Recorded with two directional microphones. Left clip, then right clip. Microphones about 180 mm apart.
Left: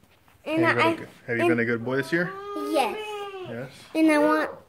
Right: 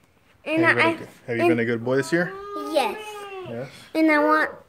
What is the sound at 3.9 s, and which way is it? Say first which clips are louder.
Speech: right 2 dB; 10° left (ahead or behind).